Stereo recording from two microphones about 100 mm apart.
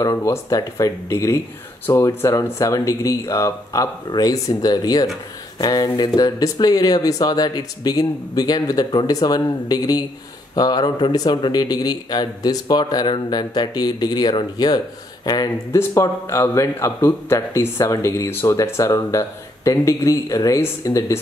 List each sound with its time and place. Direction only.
0.0 s a man's voice: 30° left (ahead or behind)